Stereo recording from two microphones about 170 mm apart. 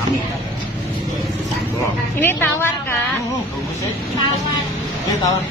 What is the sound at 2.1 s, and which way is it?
Speech, 10° left (ahead or behind).